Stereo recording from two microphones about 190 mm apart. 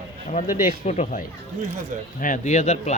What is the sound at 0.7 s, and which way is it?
Speech, 40° left (ahead or behind).